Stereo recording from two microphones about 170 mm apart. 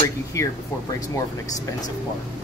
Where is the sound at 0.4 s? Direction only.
20° left (ahead or behind).